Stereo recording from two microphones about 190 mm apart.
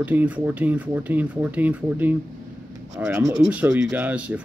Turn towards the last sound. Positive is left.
turn(degrees=-5)  # may be behind; listen again after turning